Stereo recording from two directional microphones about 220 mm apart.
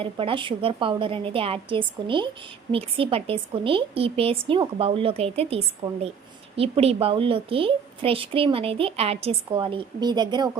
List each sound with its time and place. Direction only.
0.0 s a woman's voice: 25° right (ahead or behind)